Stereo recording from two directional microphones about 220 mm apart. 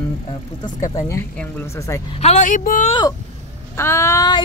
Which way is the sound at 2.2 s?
30° left (ahead or behind).